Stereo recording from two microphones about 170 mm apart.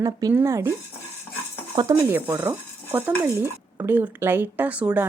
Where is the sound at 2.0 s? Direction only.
10° right (ahead or behind).